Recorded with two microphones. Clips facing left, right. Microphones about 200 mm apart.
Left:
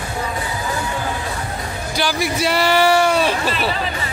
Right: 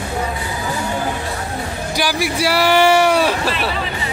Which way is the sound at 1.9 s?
10° right (ahead or behind).